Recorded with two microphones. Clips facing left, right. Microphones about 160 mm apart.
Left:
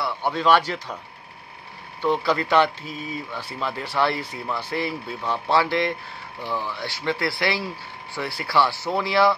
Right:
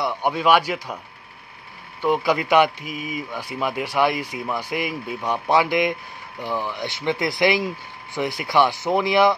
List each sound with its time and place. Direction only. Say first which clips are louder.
0.0 s speech: right 2 dB; 15° right (ahead or behind)
2.0 s speech: right 2 dB; 10° right (ahead or behind)